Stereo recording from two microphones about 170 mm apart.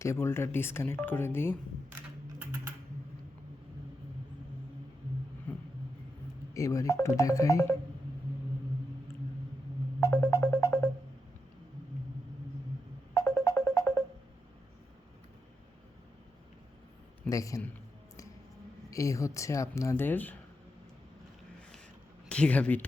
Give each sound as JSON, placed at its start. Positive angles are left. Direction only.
{"t": 0.0, "sound": "speech", "side_deg": 15}
{"t": 5.5, "sound": "vehicle", "side_deg": 10}
{"t": 6.5, "sound": "speech", "side_deg": 20}
{"t": 10.0, "sound": "music", "side_deg": 10}
{"t": 13.1, "sound": "music", "side_deg": 15}
{"t": 17.2, "sound": "a man's voice", "side_deg": 20}
{"t": 18.9, "sound": "speech", "side_deg": 20}
{"t": 22.3, "sound": "speech", "side_deg": 5}